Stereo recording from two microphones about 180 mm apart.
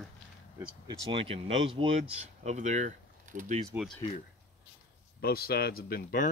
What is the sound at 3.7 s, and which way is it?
Speech, 5° right (ahead or behind).